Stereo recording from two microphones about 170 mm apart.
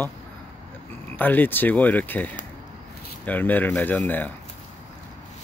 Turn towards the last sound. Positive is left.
turn(degrees=10)  # may be behind; listen again after turning